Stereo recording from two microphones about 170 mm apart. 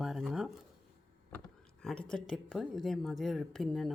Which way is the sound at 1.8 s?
5° left (ahead or behind).